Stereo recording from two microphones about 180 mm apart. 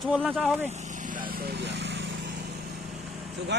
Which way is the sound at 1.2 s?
60° right (ahead or behind).